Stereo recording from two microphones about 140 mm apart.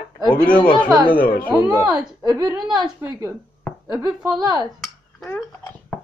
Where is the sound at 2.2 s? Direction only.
30° right (ahead or behind).